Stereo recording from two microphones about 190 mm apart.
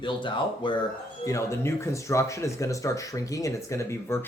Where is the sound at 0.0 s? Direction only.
25° left (ahead or behind).